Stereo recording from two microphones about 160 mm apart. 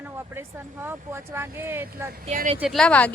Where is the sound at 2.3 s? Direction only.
45° right (ahead or behind).